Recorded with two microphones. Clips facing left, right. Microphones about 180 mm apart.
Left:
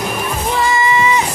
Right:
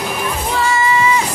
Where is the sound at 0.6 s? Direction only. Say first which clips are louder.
Even; 15° left (ahead or behind).